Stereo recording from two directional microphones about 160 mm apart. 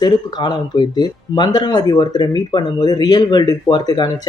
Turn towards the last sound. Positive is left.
turn(degrees=25)  # may be behind; listen again after turning